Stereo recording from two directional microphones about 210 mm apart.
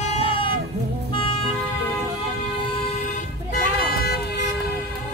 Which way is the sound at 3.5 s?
45° left (ahead or behind).